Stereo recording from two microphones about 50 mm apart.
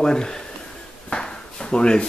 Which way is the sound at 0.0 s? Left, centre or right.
Centre.